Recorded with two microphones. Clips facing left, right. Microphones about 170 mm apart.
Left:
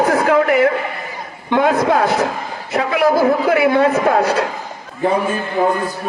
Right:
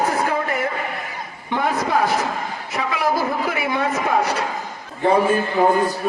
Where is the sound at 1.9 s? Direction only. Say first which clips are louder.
Left 4 dB; 90° left.